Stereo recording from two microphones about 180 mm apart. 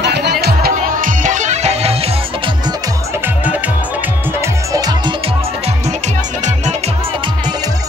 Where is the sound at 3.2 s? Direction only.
10° right (ahead or behind).